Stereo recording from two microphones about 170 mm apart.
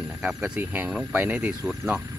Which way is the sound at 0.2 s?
5° right (ahead or behind).